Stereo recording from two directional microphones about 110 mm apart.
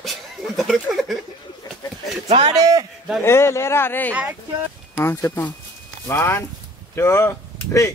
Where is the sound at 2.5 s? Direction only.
35° right (ahead or behind).